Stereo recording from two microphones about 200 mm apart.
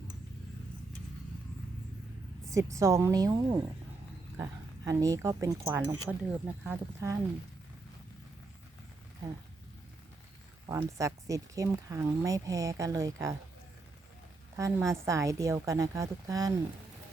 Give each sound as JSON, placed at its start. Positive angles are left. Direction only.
{"t": 2.5, "sound": "speech", "side_deg": -15}
{"t": 10.7, "sound": "speech", "side_deg": -15}
{"t": 14.5, "sound": "speech", "side_deg": -15}